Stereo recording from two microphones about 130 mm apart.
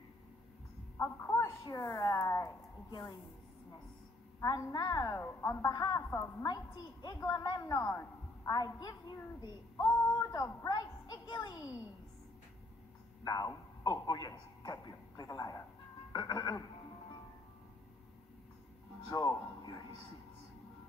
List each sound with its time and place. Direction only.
0.9 s a sound: 20° left (ahead or behind)
1.6 s a woman's voice: 25° left (ahead or behind)
4.4 s a woman's voice: 25° left (ahead or behind)
7.8 s a man's voice: 15° left (ahead or behind)
8.5 s a woman's voice: 30° left (ahead or behind)
13.2 s a man's voice: 30° left (ahead or behind)
16.1 s music: 30° left (ahead or behind)
19.0 s music: 30° left (ahead or behind)